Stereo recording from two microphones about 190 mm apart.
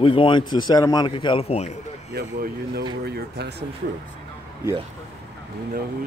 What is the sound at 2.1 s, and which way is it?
A man's voice, 55° right (ahead or behind).